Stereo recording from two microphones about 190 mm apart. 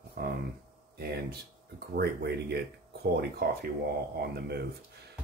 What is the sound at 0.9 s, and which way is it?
Speech, 55° right (ahead or behind).